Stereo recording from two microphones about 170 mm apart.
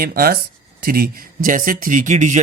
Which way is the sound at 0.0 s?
60° right (ahead or behind).